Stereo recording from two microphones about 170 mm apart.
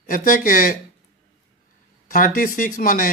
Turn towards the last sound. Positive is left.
turn(degrees=55)  # may be behind; listen again after turning